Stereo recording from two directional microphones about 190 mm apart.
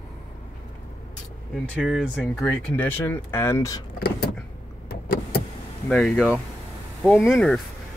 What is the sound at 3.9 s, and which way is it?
Vehicle, 50° left (ahead or behind).